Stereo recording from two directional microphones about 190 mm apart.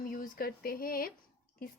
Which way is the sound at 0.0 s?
50° left (ahead or behind).